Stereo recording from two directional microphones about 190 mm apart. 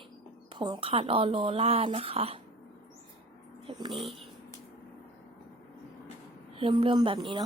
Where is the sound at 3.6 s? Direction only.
30° right (ahead or behind).